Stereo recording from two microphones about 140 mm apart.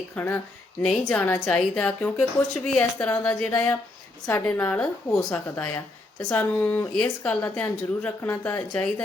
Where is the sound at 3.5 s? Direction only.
20° left (ahead or behind).